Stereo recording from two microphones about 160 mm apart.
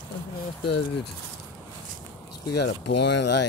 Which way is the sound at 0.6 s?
90° left.